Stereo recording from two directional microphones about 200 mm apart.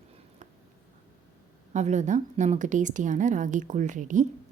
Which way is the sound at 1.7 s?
35° right (ahead or behind).